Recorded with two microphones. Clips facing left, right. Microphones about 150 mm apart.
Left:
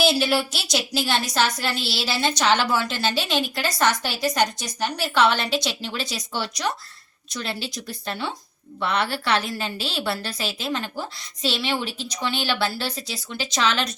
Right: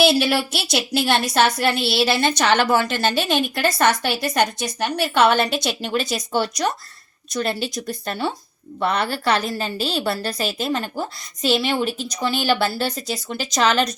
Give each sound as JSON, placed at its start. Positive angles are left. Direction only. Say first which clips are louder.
{"t": 0.0, "sound": "a woman's voice", "louder": "right 3 dB", "side_deg": -65}